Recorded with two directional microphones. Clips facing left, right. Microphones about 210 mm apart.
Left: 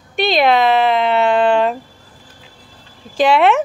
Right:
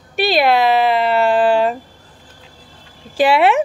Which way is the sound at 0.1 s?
5° right (ahead or behind).